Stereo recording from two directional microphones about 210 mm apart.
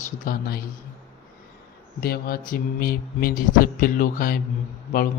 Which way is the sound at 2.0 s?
45° left (ahead or behind).